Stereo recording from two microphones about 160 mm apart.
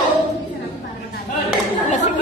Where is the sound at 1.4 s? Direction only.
50° left (ahead or behind).